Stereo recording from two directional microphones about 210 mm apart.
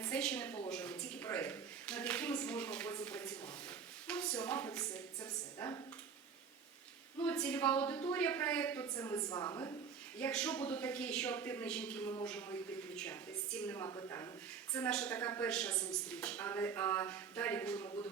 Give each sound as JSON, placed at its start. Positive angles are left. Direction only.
{"t": 0.0, "sound": "a woman's voice", "side_deg": 5}
{"t": 7.3, "sound": "a woman's voice", "side_deg": 5}
{"t": 10.2, "sound": "a woman's voice", "side_deg": 5}
{"t": 13.7, "sound": "a woman's voice", "side_deg": 15}
{"t": 17.8, "sound": "speech", "side_deg": 20}